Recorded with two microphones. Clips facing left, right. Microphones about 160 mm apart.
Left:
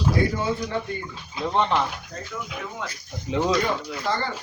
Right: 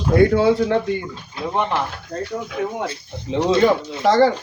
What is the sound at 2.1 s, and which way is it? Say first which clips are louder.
Speech: right 10 dB; 55° right (ahead or behind).